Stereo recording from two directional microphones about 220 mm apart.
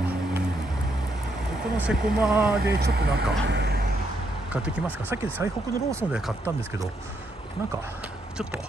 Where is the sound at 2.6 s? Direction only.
45° right (ahead or behind).